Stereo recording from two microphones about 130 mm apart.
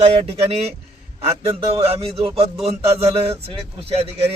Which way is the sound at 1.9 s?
45° right (ahead or behind).